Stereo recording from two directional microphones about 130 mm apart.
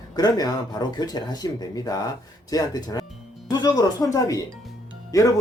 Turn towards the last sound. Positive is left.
turn(degrees=25)  # may be behind; listen again after turning